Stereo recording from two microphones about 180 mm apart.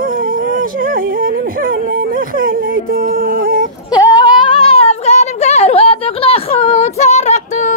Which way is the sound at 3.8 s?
20° left (ahead or behind).